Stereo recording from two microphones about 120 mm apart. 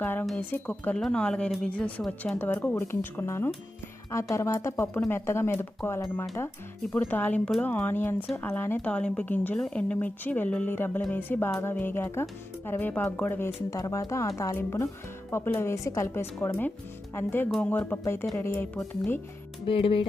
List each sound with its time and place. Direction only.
0.0 s speech: 15° left (ahead or behind)
13.7 s speech: 30° left (ahead or behind)
19.6 s speech: 50° left (ahead or behind)